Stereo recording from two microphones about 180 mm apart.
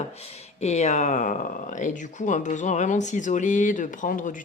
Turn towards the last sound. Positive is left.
turn(degrees=45)  # may be behind; listen again after turning